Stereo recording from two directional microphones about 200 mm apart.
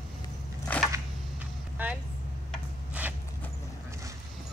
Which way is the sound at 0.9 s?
10° right (ahead or behind).